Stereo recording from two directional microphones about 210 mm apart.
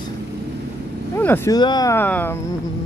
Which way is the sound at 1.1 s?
10° left (ahead or behind).